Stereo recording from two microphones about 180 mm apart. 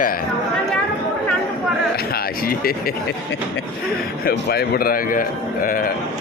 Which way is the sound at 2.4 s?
55° left (ahead or behind).